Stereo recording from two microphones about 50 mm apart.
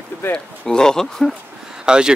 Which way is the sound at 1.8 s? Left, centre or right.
Centre.